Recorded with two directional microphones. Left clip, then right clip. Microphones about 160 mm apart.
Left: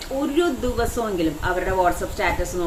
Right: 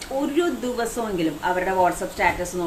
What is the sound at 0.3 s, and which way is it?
Speech, 5° right (ahead or behind).